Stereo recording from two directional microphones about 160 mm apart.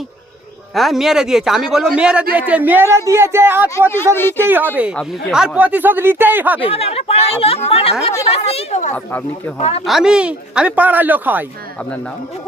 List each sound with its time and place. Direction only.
0.7 s a man's voice: centre (ahead or behind)
3.8 s speech: 15° left (ahead or behind)
4.8 s speech: 10° right (ahead or behind)
6.6 s speech: 40° left (ahead or behind)
9.8 s speech: 5° right (ahead or behind)